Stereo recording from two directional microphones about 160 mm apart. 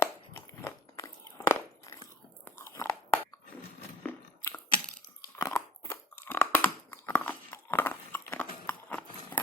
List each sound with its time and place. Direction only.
0.0 s crunch: 15° left (ahead or behind)
2.4 s biting: 15° left (ahead or behind)
4.0 s a sound: 10° left (ahead or behind)
5.4 s crunch: 15° left (ahead or behind)